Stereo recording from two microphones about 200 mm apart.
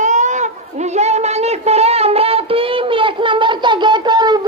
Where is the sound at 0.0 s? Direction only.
35° right (ahead or behind).